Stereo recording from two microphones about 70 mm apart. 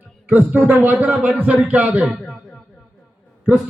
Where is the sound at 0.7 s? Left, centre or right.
Right.